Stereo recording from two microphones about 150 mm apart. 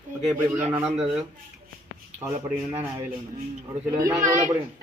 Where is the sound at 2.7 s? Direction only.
15° right (ahead or behind).